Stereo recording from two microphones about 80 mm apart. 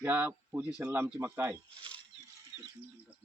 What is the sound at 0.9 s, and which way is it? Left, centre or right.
Speech, right.